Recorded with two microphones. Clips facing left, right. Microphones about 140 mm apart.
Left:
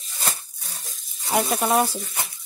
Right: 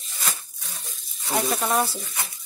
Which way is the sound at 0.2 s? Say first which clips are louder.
Left 2 dB; 35° left (ahead or behind).